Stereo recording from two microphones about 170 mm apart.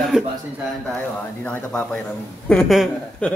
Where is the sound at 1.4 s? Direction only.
5° left (ahead or behind).